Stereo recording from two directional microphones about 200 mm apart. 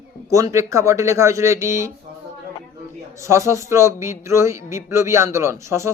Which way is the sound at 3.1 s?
15° right (ahead or behind).